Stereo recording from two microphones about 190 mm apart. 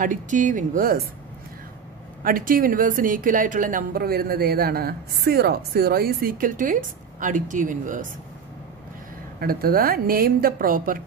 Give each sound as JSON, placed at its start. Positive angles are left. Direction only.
{"t": 0.0, "sound": "a woman's voice", "side_deg": -40}
{"t": 2.2, "sound": "a woman's voice", "side_deg": -50}
{"t": 9.4, "sound": "a woman's voice", "side_deg": -50}